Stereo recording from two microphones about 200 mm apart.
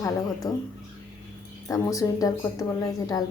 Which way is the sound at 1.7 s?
15° left (ahead or behind).